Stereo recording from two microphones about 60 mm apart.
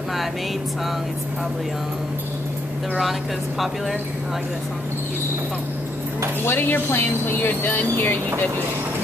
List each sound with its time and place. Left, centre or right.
3.0 s speech: centre
6.4 s speech: left